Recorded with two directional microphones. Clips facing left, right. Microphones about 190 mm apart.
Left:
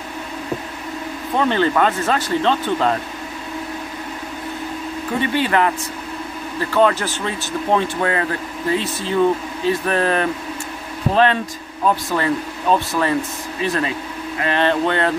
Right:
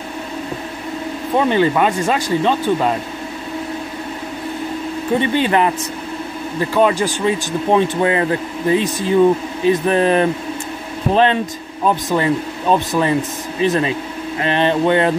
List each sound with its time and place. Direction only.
1.4 s speech: 15° right (ahead or behind)
5.2 s speech: 20° right (ahead or behind)
11.8 s speech: 20° right (ahead or behind)